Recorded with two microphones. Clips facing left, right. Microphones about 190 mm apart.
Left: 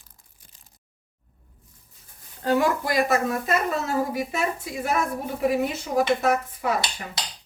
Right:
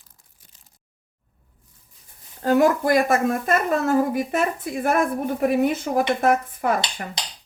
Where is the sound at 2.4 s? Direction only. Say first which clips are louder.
Right 4 dB; 45° right (ahead or behind).